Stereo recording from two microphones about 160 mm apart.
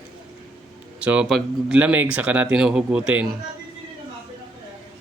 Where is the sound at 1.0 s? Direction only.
5° right (ahead or behind).